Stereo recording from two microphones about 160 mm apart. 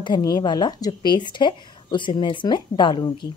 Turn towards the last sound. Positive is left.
turn(degrees=30)  # may be behind; listen again after turning